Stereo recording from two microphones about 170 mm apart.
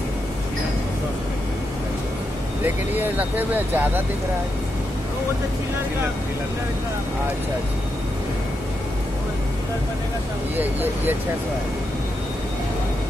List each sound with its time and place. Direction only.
2.6 s speech: 10° right (ahead or behind)
10.5 s speech: 10° right (ahead or behind)